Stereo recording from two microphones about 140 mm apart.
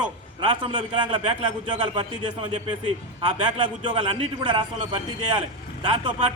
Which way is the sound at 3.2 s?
35° right (ahead or behind).